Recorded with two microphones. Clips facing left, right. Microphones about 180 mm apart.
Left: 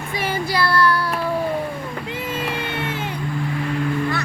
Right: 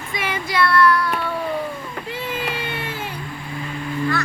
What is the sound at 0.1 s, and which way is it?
Child singing, 35° left (ahead or behind).